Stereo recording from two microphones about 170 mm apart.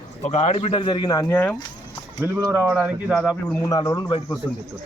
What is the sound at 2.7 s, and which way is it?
Speech, 10° right (ahead or behind).